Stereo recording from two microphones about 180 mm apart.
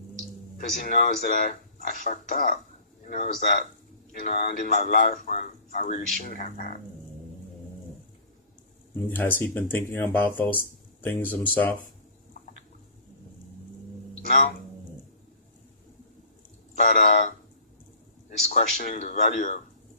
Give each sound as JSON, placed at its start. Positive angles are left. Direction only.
{"t": 0.5, "sound": "a man's voice", "side_deg": 50}
{"t": 9.0, "sound": "speech", "side_deg": 10}
{"t": 14.3, "sound": "a man's voice", "side_deg": 45}
{"t": 16.7, "sound": "a man's voice", "side_deg": 50}
{"t": 18.4, "sound": "a man's voice", "side_deg": 50}